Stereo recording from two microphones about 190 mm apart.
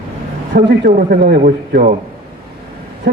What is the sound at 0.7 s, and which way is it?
A man's voice, 50° right (ahead or behind).